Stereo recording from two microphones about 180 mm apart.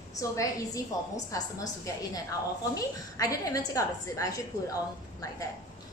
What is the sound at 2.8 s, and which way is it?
A woman's voice, 20° left (ahead or behind).